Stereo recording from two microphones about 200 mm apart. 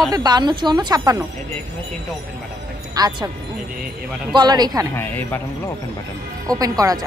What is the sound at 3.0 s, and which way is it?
Speech, 20° right (ahead or behind).